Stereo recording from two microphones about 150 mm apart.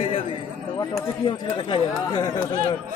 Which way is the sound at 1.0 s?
25° left (ahead or behind).